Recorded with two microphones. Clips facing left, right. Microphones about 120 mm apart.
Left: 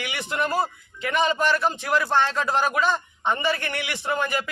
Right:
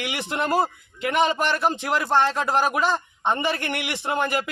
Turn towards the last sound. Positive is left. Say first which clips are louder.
# right 1 dB
turn(degrees=-20)  # may be behind; listen again after turning